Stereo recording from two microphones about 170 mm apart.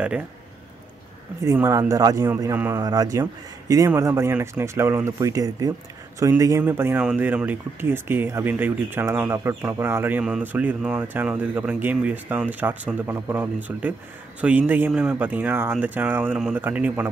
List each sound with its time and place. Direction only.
1.4 s speech: 20° right (ahead or behind)